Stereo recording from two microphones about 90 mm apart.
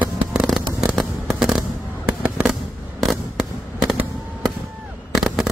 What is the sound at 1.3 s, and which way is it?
Fireworks, 5° right (ahead or behind).